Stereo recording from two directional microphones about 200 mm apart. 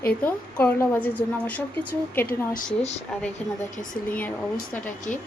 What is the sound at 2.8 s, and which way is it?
Speech, 30° left (ahead or behind).